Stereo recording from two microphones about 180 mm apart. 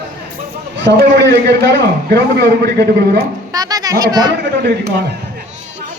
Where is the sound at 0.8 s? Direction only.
80° right.